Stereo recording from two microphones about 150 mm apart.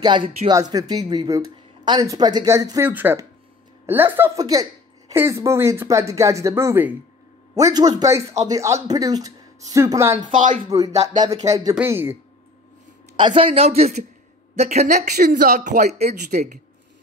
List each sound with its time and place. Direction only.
0.0 s speech: 35° right (ahead or behind); by 12.2 s 15° right (ahead or behind)
13.1 s a woman's voice: 35° right (ahead or behind); by 15.0 s 50° right (ahead or behind)
15.0 s speech: 90° right
15.6 s a woman's voice: 55° right (ahead or behind)